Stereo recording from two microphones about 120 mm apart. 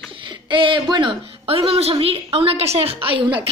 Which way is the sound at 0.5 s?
45° right (ahead or behind).